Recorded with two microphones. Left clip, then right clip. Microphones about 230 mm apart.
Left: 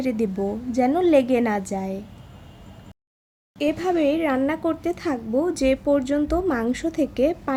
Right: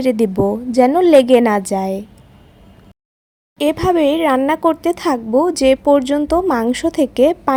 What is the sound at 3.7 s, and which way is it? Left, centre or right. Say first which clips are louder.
A woman's voice: right 7 dB; right.